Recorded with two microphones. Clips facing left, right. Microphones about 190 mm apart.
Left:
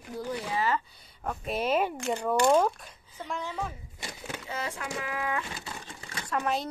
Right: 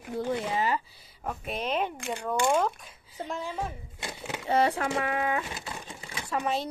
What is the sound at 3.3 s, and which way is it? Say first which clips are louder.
Speech: even; 20° right (ahead or behind).